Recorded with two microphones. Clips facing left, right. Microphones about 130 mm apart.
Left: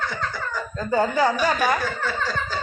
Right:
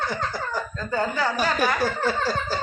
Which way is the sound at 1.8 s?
40° right (ahead or behind).